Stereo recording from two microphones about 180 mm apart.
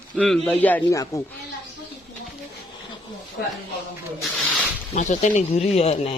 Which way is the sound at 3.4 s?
70° left (ahead or behind).